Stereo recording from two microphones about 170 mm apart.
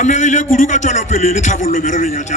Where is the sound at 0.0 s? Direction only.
45° left (ahead or behind).